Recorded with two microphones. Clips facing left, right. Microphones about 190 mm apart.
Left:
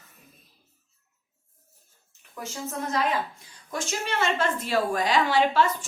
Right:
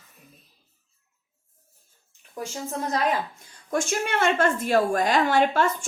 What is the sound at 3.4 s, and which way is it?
A woman's voice, 50° right (ahead or behind).